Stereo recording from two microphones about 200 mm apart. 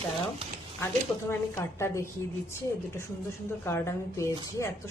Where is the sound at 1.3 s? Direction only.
15° left (ahead or behind).